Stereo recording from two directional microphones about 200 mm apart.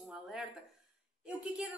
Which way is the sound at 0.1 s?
Centre (ahead or behind).